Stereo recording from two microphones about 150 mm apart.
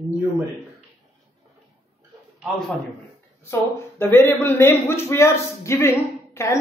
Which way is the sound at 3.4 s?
15° left (ahead or behind).